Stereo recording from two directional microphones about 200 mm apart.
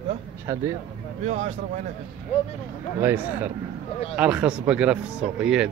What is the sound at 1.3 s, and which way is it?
Speech, 35° right (ahead or behind).